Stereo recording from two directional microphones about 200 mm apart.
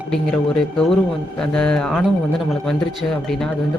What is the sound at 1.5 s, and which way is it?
Speech, 5° left (ahead or behind).